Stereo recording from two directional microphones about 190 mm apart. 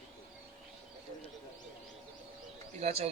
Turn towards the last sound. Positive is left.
turn(degrees=-35)  # may be behind; listen again after turning